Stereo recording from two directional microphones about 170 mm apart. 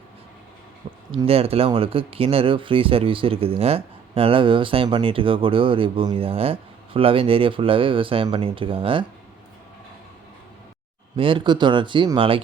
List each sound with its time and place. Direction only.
1.1 s speech: 35° right (ahead or behind)
11.2 s speech: 30° right (ahead or behind)